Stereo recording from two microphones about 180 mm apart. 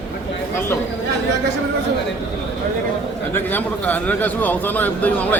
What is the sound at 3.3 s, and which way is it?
A man's voice, 10° left (ahead or behind).